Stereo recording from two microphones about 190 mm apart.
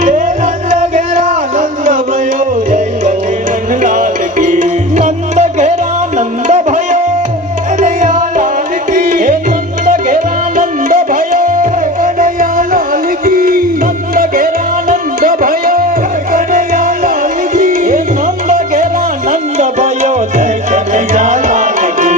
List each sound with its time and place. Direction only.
0.0 s music: 45° right (ahead or behind)